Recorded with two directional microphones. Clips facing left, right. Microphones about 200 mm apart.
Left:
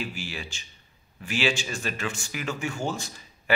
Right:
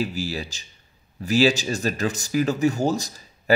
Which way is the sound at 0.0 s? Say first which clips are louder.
Right 8 dB; 40° right (ahead or behind).